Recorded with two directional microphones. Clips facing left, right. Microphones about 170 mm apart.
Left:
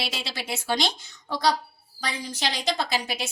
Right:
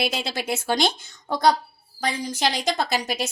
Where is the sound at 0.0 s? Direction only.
50° right (ahead or behind).